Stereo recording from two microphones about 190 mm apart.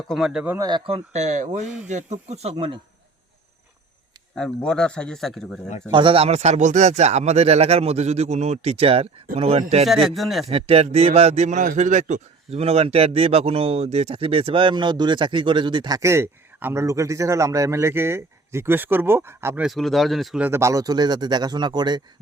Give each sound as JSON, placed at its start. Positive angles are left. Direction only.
{"t": 0.1, "sound": "a man's voice", "side_deg": 0}
{"t": 1.6, "sound": "speech", "side_deg": -5}
{"t": 1.9, "sound": "speech", "side_deg": -35}
{"t": 4.4, "sound": "speech", "side_deg": 5}
{"t": 5.9, "sound": "speech", "side_deg": -25}
{"t": 9.8, "sound": "speech", "side_deg": 0}
{"t": 10.5, "sound": "a man's voice", "side_deg": -30}
{"t": 19.6, "sound": "speech", "side_deg": 0}
{"t": 20.5, "sound": "a man's voice", "side_deg": -15}